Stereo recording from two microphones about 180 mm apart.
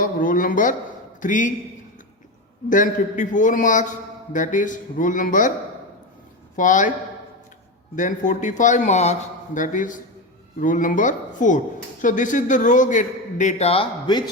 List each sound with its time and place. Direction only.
0.0 s a sound: 50° left (ahead or behind)
1.2 s a man's voice: 45° left (ahead or behind)
2.6 s a man's voice: 45° left (ahead or behind)
6.6 s a man's voice: 45° left (ahead or behind)
7.9 s a man's voice: 45° left (ahead or behind); by 14.3 s 25° left (ahead or behind)